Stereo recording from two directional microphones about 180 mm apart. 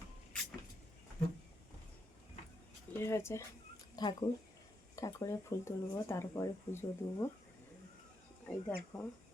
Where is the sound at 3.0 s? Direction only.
15° left (ahead or behind).